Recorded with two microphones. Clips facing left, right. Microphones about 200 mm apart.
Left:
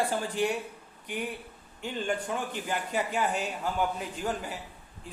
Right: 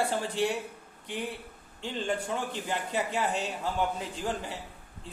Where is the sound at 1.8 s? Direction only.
25° right (ahead or behind).